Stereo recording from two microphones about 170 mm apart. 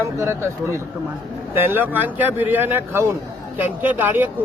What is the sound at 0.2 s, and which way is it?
Speech, 15° right (ahead or behind).